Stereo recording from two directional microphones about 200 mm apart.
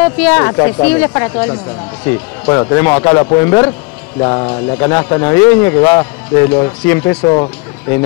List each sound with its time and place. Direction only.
0.0 s speech: 10° left (ahead or behind)